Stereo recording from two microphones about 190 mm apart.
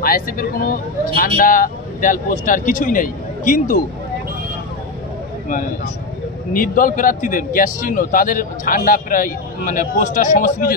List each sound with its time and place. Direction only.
0.0 s a man's voice: 50° left (ahead or behind)
6.5 s a man's voice: 45° left (ahead or behind)